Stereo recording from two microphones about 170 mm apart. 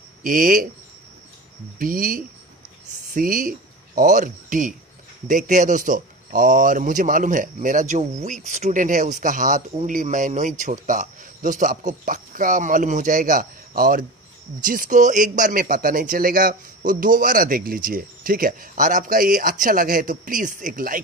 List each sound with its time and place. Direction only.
0.2 s a man's voice: 50° right (ahead or behind)
1.8 s a man's voice: 55° right (ahead or behind)